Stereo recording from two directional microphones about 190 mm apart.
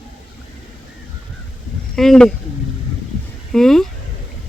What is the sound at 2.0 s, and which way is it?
Speech, centre (ahead or behind).